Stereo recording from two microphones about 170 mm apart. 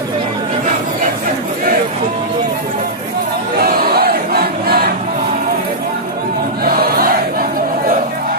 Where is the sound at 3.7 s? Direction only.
65° right (ahead or behind).